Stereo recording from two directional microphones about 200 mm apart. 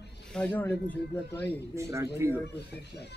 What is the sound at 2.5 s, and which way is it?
Speech, 55° left (ahead or behind).